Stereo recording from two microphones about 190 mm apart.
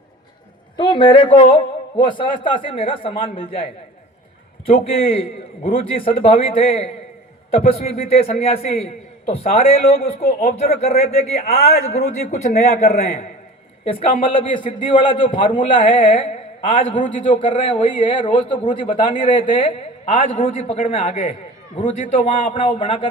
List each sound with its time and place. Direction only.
0.8 s a man's voice: 25° left (ahead or behind)
14.3 s a man's voice: 30° left (ahead or behind)
22.0 s a man's voice: 40° left (ahead or behind)